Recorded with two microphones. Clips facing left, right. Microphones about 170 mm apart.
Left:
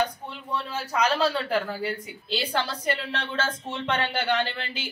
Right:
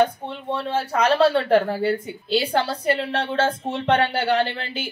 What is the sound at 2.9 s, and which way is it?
Speech, 50° right (ahead or behind).